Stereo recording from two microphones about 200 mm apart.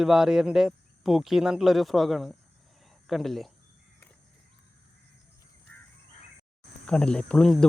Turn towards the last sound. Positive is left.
turn(degrees=5)  # may be behind; listen again after turning